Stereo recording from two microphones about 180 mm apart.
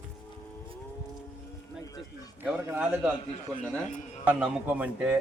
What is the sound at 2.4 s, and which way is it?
Speech, 10° right (ahead or behind).